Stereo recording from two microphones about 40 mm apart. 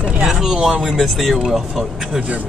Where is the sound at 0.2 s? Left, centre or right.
Centre.